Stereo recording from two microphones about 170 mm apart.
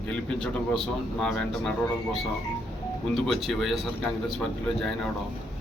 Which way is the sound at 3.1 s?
5° left (ahead or behind).